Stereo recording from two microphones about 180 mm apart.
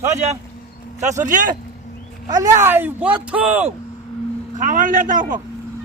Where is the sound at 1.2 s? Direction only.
45° right (ahead or behind).